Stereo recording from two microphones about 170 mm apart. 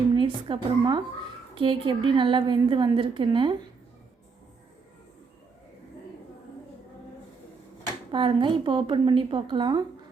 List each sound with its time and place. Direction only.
0.1 s a woman's voice: 30° right (ahead or behind)
8.1 s a woman's voice: 30° right (ahead or behind)